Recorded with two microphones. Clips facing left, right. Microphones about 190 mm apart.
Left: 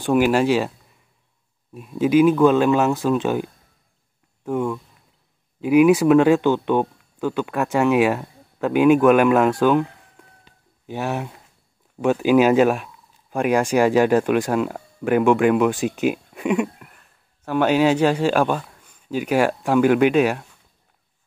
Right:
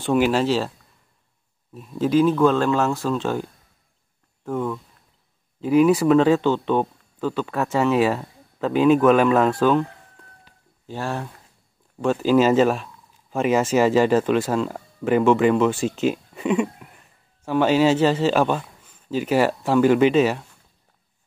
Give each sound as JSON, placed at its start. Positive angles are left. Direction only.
{"t": 0.0, "sound": "speech", "side_deg": 5}
{"t": 5.6, "sound": "speech", "side_deg": 5}
{"t": 10.9, "sound": "speech", "side_deg": 15}
{"t": 12.6, "sound": "speech", "side_deg": 0}
{"t": 13.7, "sound": "speech", "side_deg": 10}
{"t": 15.8, "sound": "speech", "side_deg": 15}
{"t": 16.3, "sound": "a sound", "side_deg": 5}
{"t": 17.5, "sound": "speech", "side_deg": 10}
{"t": 18.6, "sound": "a sound", "side_deg": -5}
{"t": 19.0, "sound": "speech", "side_deg": 10}